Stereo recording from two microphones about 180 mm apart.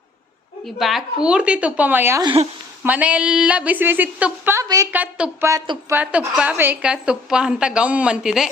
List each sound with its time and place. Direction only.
0.8 s a woman's voice: centre (ahead or behind)
2.2 s speech: 30° right (ahead or behind)
2.8 s a woman's voice: 10° right (ahead or behind)
5.5 s speech: 20° right (ahead or behind)
6.0 s a woman's voice: 5° right (ahead or behind)